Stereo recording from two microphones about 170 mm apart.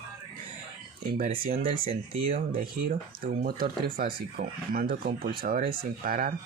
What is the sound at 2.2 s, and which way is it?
Speech, 55° right (ahead or behind).